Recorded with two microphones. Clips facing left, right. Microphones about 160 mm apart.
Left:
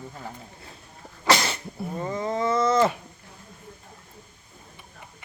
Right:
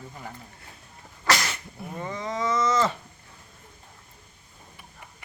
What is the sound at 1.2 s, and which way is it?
Sneeze, 30° left (ahead or behind).